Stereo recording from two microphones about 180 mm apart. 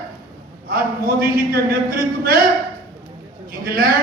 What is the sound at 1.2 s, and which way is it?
A man's voice, 55° right (ahead or behind).